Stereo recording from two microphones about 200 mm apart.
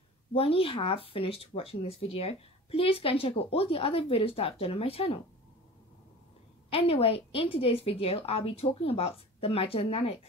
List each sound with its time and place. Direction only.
0.3 s speech: 30° left (ahead or behind)
6.7 s speech: 30° left (ahead or behind)